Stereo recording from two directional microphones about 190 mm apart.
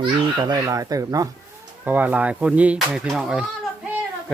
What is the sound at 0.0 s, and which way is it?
Speech, 25° right (ahead or behind).